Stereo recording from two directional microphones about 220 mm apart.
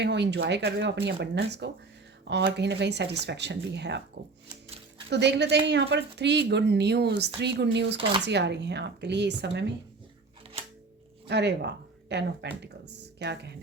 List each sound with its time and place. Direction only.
0.0 s a woman's voice: 50° right (ahead or behind)
5.0 s a woman's voice: 50° right (ahead or behind)
11.3 s speech: 50° right (ahead or behind)